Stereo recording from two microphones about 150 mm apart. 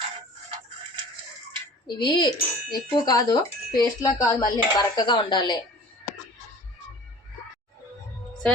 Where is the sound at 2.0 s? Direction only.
30° left (ahead or behind).